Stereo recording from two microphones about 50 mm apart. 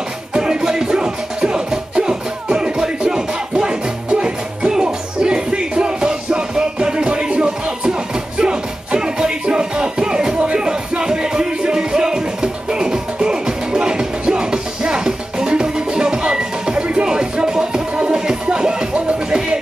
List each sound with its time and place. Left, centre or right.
0.4 s music: centre